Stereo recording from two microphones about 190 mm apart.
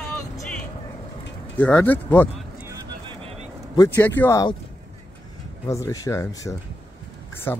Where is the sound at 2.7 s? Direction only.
25° right (ahead or behind).